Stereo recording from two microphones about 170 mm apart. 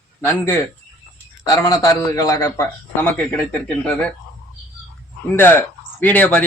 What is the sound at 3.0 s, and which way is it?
Speech, 5° left (ahead or behind).